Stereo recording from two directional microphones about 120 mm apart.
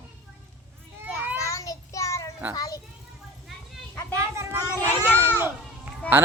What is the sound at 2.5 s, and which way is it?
Children playing, 30° left (ahead or behind).